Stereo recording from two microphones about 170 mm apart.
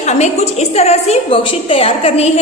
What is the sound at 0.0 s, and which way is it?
A woman's voice, 40° left (ahead or behind).